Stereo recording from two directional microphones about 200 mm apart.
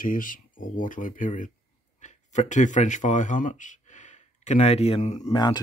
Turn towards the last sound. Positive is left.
turn(degrees=20)  # may be behind; listen again after turning